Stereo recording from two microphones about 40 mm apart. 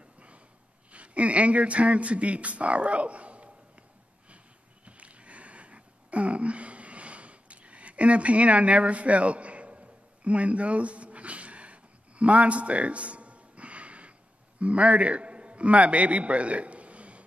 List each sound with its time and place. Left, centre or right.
0.9 s speech: right
4.8 s a sound: right
14.6 s a man's voice: right